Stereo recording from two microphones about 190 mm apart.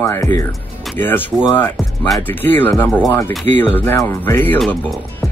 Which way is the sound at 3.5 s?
35° right (ahead or behind).